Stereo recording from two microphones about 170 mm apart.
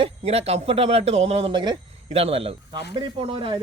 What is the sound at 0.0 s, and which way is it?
Speech, 35° right (ahead or behind).